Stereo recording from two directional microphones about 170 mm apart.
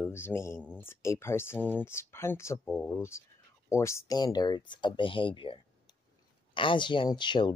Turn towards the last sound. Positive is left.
turn(degrees=25)  # may be behind; listen again after turning